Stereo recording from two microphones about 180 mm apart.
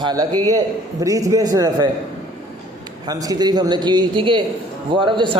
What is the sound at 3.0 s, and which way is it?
A man's voice, 20° right (ahead or behind).